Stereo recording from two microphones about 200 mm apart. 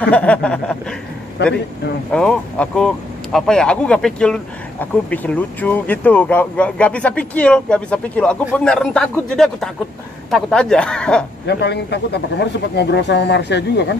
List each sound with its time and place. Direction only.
0.1 s a sound: 5° left (ahead or behind)
2.1 s speech: 5° left (ahead or behind)
11.4 s speech: 55° left (ahead or behind)